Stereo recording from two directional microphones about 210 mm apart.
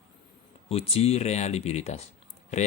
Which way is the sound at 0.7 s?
30° left (ahead or behind).